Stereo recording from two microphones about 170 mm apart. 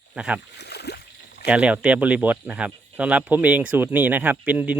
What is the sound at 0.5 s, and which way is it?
Rowboat, 75° left (ahead or behind).